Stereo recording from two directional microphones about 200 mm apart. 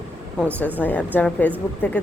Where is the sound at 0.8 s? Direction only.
10° left (ahead or behind).